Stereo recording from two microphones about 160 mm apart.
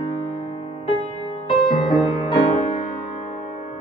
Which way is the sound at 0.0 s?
40° left (ahead or behind).